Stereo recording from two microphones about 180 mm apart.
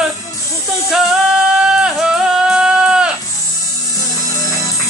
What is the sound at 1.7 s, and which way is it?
Sheep, 5° right (ahead or behind).